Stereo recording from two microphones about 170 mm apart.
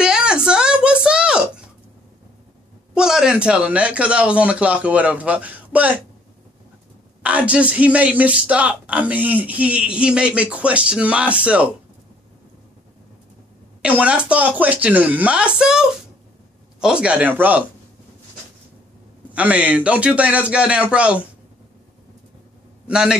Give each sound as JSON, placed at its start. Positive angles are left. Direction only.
{"t": 0.0, "sound": "a sound", "side_deg": -5}
{"t": 2.9, "sound": "a man's voice", "side_deg": -5}
{"t": 7.2, "sound": "a man's voice", "side_deg": -10}
{"t": 13.8, "sound": "a man's voice", "side_deg": -5}
{"t": 19.3, "sound": "a man's voice", "side_deg": -5}
{"t": 22.8, "sound": "a man's voice", "side_deg": -5}